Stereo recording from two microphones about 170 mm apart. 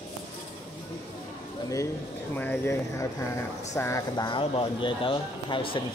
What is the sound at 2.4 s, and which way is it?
Speech, 10° left (ahead or behind).